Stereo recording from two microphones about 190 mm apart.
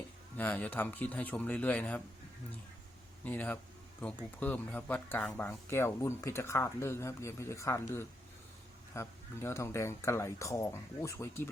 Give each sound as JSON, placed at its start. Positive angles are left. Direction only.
{"t": 0.3, "sound": "speech", "side_deg": 10}
{"t": 3.2, "sound": "speech", "side_deg": 10}